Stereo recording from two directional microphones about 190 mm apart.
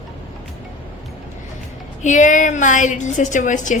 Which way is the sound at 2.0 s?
40° left (ahead or behind).